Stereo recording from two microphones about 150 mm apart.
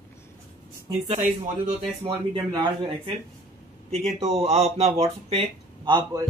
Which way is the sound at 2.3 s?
30° right (ahead or behind).